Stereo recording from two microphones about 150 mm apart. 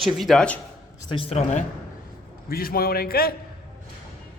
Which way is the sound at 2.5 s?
80° left.